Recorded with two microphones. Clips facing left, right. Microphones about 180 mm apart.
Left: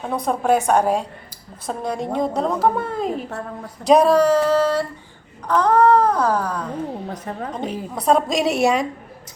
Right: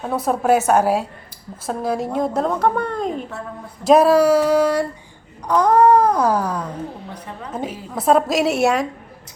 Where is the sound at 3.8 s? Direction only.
5° right (ahead or behind).